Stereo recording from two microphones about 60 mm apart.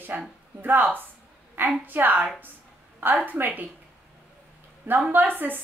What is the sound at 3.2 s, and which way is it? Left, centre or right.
Speech, right.